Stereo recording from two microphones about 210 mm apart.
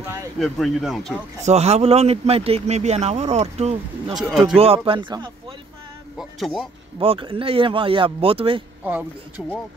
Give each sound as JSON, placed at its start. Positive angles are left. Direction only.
{"t": 0.4, "sound": "speech", "side_deg": 0}
{"t": 1.4, "sound": "speech", "side_deg": -30}
{"t": 4.1, "sound": "speech", "side_deg": 0}
{"t": 4.6, "sound": "speech", "side_deg": -25}
{"t": 6.1, "sound": "speech", "side_deg": 0}
{"t": 7.0, "sound": "speech", "side_deg": -25}
{"t": 9.4, "sound": "speech", "side_deg": 0}